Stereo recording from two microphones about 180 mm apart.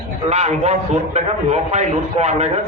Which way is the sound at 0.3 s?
40° right (ahead or behind).